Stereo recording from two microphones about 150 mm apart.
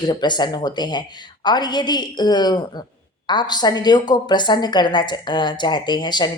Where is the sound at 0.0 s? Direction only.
30° left (ahead or behind).